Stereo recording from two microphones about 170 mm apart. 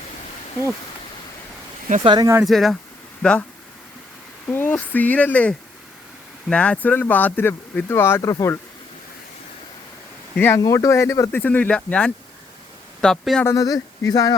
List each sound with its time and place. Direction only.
2.0 s speech: 25° right (ahead or behind)
2.4 s speech: centre (ahead or behind)
4.5 s speech: 10° left (ahead or behind)
10.3 s speech: 15° left (ahead or behind)
13.4 s speech: 20° left (ahead or behind)